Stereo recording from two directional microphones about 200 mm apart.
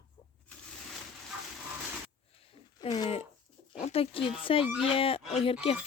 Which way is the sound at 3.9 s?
30° left (ahead or behind).